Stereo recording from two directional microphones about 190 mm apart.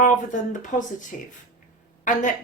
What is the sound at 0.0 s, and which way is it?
A woman's voice, 45° left (ahead or behind).